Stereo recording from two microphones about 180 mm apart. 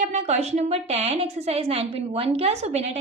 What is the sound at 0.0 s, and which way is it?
A woman's voice, 40° right (ahead or behind).